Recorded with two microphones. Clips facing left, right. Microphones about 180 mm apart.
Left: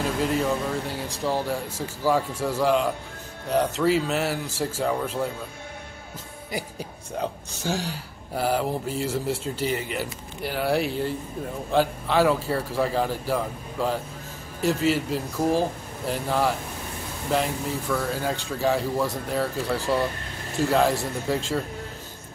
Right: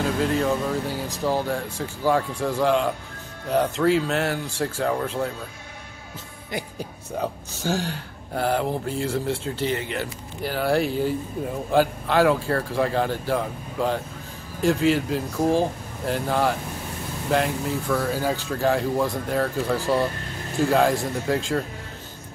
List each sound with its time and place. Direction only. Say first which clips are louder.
0.5 s speech: right 2 dB; centre (ahead or behind)
6.5 s speech: right 1 dB; centre (ahead or behind)